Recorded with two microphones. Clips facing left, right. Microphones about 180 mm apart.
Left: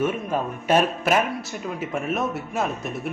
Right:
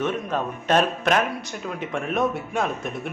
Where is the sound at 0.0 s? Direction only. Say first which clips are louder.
Left 1 dB; 10° left (ahead or behind).